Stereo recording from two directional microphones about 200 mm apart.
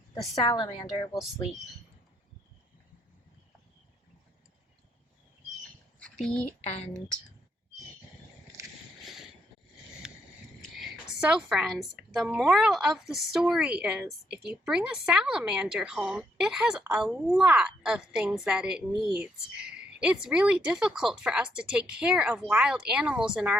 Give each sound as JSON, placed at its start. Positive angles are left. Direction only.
{"t": 0.4, "sound": "a woman's voice", "side_deg": 25}
{"t": 6.1, "sound": "a woman's voice", "side_deg": 5}
{"t": 6.6, "sound": "speech", "side_deg": 35}
{"t": 8.6, "sound": "vehicle", "side_deg": -15}
{"t": 10.8, "sound": "a woman's voice", "side_deg": -5}